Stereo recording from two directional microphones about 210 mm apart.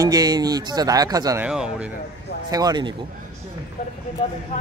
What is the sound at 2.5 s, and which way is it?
Speech, 20° right (ahead or behind).